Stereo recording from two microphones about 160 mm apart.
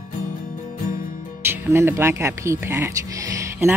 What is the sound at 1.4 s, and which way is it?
Speech, 15° right (ahead or behind).